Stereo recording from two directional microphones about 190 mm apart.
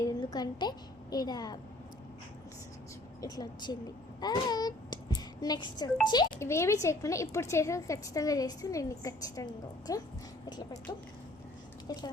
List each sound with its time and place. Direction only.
0.0 s a woman's voice: 20° left (ahead or behind)
3.2 s a child's voice: 20° left (ahead or behind)
11.9 s a child's voice: 20° left (ahead or behind)